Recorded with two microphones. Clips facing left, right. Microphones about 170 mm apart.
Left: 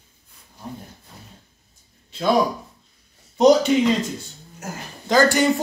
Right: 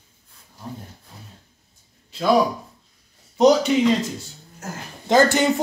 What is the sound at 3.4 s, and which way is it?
Speech, centre (ahead or behind).